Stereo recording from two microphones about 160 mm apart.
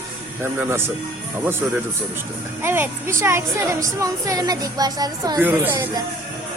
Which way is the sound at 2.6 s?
15° right (ahead or behind).